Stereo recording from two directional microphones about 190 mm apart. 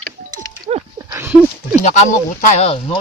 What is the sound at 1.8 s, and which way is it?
Speech, 40° left (ahead or behind).